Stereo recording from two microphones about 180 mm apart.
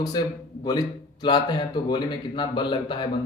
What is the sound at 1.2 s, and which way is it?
Speech, 25° left (ahead or behind).